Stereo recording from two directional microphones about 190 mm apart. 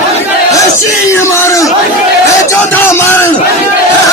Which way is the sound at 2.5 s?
10° left (ahead or behind).